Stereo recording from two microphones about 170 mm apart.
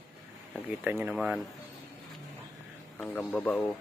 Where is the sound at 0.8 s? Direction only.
10° right (ahead or behind).